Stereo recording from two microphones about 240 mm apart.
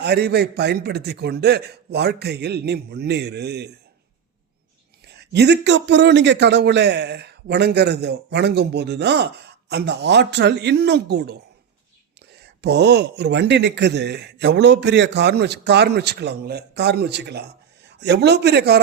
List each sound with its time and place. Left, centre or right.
0.0 s a man's voice: right
5.0 s a man's voice: right
12.6 s a man's voice: right